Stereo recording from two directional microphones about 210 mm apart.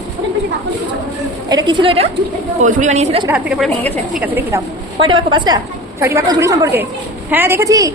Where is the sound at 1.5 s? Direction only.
20° right (ahead or behind).